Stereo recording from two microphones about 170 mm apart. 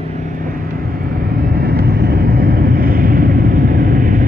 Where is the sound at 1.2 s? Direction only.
60° right (ahead or behind).